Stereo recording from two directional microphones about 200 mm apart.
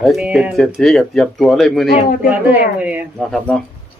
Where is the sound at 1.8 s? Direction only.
40° left (ahead or behind).